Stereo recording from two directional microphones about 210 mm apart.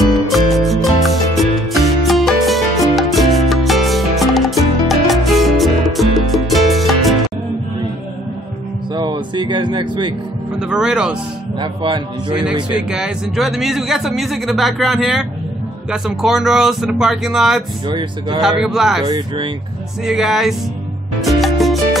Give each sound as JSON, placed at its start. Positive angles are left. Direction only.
{"t": 0.0, "sound": "music", "side_deg": 0}
{"t": 8.9, "sound": "a sound", "side_deg": -20}
{"t": 10.6, "sound": "a man's voice", "side_deg": -5}
{"t": 11.6, "sound": "speech", "side_deg": -20}
{"t": 12.9, "sound": "a man's voice", "side_deg": 0}
{"t": 17.8, "sound": "speech", "side_deg": -20}
{"t": 18.4, "sound": "a man's voice", "side_deg": 0}
{"t": 19.0, "sound": "speech", "side_deg": -20}
{"t": 20.1, "sound": "a man's voice", "side_deg": 0}
{"t": 21.2, "sound": "music", "side_deg": 0}